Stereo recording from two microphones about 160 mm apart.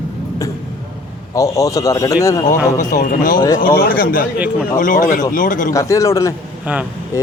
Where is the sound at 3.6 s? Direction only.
65° left (ahead or behind).